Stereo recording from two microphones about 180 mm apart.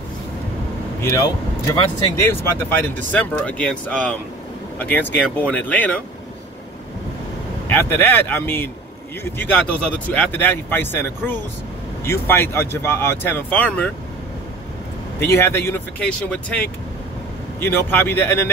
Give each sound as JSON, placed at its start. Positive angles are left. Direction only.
{"t": 1.0, "sound": "speech", "side_deg": 15}
{"t": 7.6, "sound": "speech", "side_deg": 10}
{"t": 15.1, "sound": "speech", "side_deg": 15}